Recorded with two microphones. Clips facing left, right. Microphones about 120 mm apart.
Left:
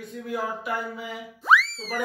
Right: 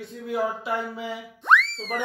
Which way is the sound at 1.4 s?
5° left (ahead or behind).